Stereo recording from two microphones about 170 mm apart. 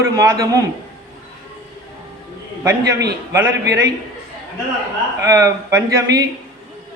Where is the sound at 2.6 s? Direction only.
15° right (ahead or behind).